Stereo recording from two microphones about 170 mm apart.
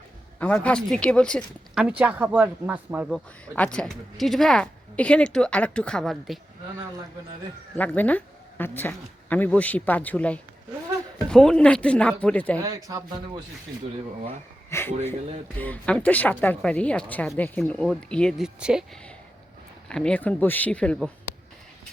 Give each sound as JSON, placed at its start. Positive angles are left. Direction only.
{"t": 0.3, "sound": "speech", "side_deg": 10}
{"t": 3.1, "sound": "speech", "side_deg": 5}
{"t": 7.8, "sound": "speech", "side_deg": 10}
{"t": 12.5, "sound": "speech", "side_deg": -20}
{"t": 14.7, "sound": "speech", "side_deg": 15}
{"t": 19.9, "sound": "speech", "side_deg": 5}